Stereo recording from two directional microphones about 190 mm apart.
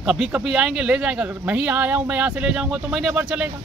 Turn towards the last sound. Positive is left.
turn(degrees=-5)  # may be behind; listen again after turning